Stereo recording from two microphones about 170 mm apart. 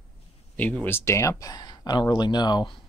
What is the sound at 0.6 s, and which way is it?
Speech, 10° left (ahead or behind).